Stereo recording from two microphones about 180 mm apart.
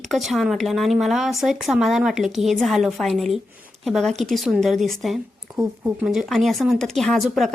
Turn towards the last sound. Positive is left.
turn(degrees=0)  # may be behind; listen again after turning